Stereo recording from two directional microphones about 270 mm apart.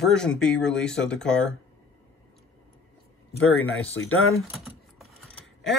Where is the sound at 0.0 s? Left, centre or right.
Centre.